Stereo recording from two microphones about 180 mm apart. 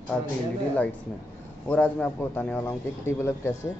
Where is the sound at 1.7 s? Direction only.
10° left (ahead or behind).